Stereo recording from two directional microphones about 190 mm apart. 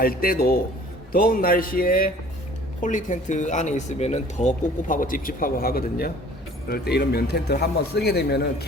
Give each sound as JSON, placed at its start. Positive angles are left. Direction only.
{"t": 0.0, "sound": "a man's voice", "side_deg": 50}